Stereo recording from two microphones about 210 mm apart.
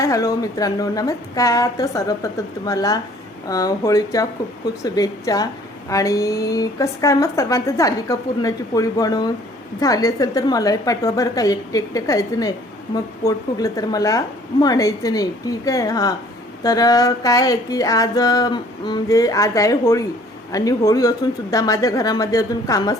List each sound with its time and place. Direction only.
0.0 s a woman's voice: 15° left (ahead or behind)